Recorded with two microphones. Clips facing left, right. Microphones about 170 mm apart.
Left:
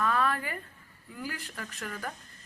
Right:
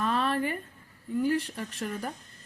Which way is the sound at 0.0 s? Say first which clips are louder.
Right 2 dB; 25° right (ahead or behind).